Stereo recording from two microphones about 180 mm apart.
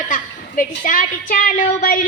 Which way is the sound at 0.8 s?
50° left (ahead or behind).